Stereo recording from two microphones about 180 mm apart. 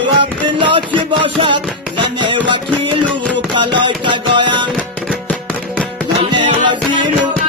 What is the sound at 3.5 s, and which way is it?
Music, 25° right (ahead or behind).